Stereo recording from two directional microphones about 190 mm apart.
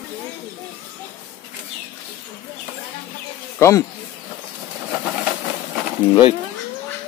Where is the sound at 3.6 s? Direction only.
15° left (ahead or behind).